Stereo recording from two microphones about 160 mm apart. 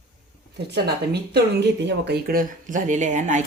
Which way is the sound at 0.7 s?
90° right.